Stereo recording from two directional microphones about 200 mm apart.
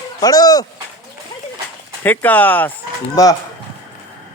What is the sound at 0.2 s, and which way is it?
Speech, 20° left (ahead or behind).